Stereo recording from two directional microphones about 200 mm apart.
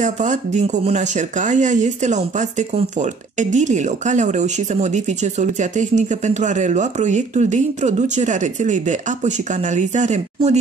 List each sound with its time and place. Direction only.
0.0 s speech: 40° right (ahead or behind)